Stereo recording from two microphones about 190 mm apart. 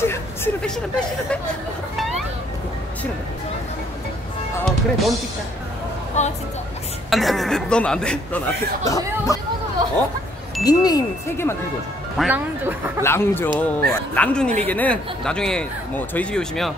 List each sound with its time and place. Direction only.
0.0 s speech: 10° left (ahead or behind)
2.0 s music: centre (ahead or behind)
4.6 s speech: centre (ahead or behind)
6.2 s speech: 40° left (ahead or behind)
7.1 s speech: centre (ahead or behind)
8.8 s speech: 15° left (ahead or behind)
10.6 s speech: 20° left (ahead or behind)
12.2 s speech: 10° right (ahead or behind)
13.0 s speech: 10° left (ahead or behind)